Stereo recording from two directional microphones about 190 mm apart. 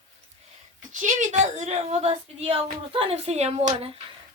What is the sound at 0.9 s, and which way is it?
A woman's voice, 40° right (ahead or behind).